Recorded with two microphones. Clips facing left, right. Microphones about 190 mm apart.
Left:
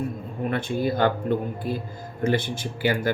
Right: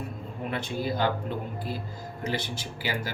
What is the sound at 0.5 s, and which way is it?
Speech, 55° left (ahead or behind).